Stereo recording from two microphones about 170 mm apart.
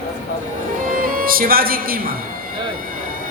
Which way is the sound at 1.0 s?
55° right (ahead or behind).